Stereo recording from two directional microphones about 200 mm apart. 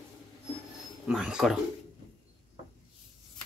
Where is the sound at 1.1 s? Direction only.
Centre (ahead or behind).